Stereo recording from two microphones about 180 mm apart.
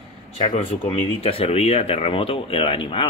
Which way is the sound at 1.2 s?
35° left (ahead or behind).